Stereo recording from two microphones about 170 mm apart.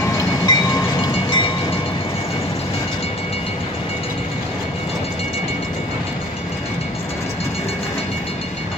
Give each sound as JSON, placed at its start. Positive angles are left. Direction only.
{"t": 0.0, "sound": "train", "side_deg": 20}